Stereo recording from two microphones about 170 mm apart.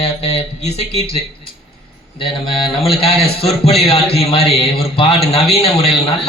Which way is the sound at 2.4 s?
30° left (ahead or behind).